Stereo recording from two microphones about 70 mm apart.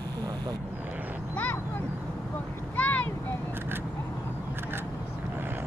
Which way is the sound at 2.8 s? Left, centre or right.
Left.